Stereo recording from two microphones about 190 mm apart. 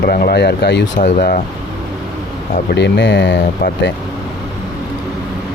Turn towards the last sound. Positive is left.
turn(degrees=65)  # may be behind; listen again after turning